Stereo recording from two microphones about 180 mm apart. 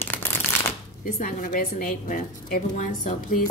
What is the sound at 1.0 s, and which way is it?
A woman's voice, 50° left (ahead or behind).